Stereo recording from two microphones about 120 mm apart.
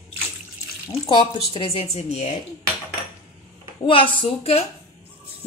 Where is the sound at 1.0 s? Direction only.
45° left (ahead or behind); by 2.3 s 65° left (ahead or behind).